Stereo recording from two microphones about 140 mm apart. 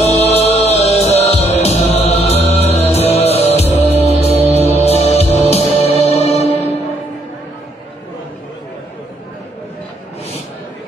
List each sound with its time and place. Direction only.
0.0 s music: 50° left (ahead or behind)